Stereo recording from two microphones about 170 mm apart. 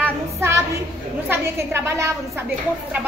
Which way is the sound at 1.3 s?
15° right (ahead or behind).